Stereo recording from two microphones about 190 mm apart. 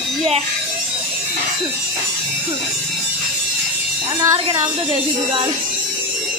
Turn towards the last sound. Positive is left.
turn(degrees=-20)  # may be behind; listen again after turning